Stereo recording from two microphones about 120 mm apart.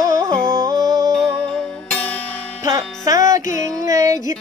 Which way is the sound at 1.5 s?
15° left (ahead or behind).